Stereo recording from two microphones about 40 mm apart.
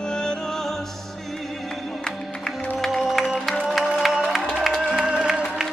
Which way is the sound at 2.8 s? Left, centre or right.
Centre.